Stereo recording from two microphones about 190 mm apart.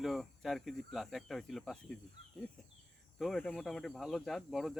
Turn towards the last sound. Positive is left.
turn(degrees=0)  # may be behind; listen again after turning